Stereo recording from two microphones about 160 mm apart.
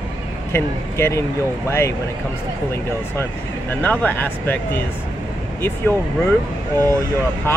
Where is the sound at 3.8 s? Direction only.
10° left (ahead or behind).